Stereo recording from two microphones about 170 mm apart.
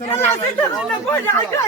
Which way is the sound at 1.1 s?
15° left (ahead or behind).